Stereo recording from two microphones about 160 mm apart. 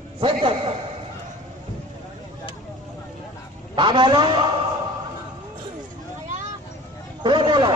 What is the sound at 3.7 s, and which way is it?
Speech, 30° right (ahead or behind).